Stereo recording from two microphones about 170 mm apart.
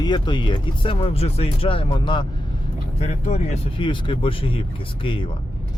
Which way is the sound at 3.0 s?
45° left (ahead or behind).